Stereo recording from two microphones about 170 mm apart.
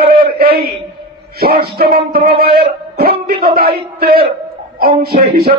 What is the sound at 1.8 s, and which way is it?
Speech, 65° right (ahead or behind).